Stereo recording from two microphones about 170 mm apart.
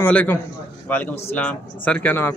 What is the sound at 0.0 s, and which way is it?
A man's voice, 10° left (ahead or behind).